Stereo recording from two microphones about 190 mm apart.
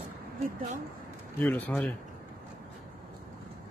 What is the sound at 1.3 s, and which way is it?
Speech, 10° left (ahead or behind).